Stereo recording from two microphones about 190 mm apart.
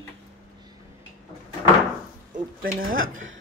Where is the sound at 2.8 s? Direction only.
45° right (ahead or behind).